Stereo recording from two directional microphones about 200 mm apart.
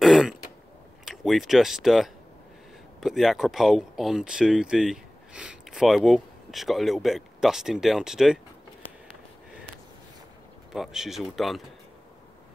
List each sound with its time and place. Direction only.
0.0 s throat clearing: centre (ahead or behind)
1.0 s speech: centre (ahead or behind)
10.7 s speech: centre (ahead or behind)